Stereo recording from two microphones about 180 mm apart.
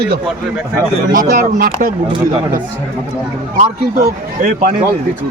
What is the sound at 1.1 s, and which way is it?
Speech, 50° right (ahead or behind).